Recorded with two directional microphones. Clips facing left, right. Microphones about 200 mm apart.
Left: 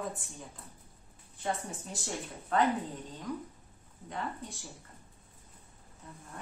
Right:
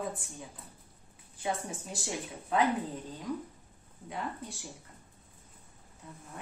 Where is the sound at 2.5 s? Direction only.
10° right (ahead or behind).